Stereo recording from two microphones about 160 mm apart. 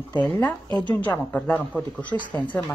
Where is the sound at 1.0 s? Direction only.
10° left (ahead or behind).